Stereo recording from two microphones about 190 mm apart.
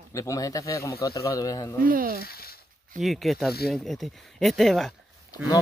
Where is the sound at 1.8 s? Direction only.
50° right (ahead or behind).